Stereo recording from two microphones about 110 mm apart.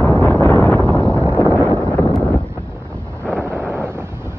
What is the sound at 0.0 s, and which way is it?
Wind noise, 15° left (ahead or behind).